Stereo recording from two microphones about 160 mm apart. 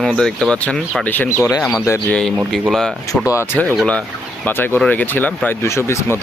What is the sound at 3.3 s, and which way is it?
A man's voice, 15° left (ahead or behind).